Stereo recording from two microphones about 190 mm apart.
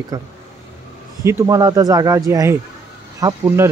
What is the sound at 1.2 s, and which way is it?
Speech, 15° right (ahead or behind).